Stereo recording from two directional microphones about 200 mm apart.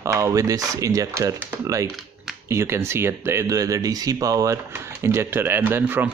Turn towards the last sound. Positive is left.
turn(degrees=-10)  # may be behind; listen again after turning